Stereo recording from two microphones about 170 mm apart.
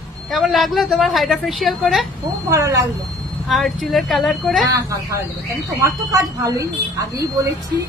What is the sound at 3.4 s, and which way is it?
A woman's voice, centre (ahead or behind).